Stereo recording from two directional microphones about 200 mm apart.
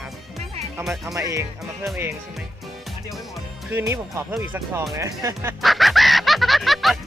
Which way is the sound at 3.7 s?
10° right (ahead or behind).